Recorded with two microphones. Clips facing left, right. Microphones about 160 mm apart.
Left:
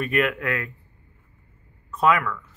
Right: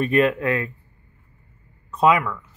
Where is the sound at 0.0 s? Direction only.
30° right (ahead or behind).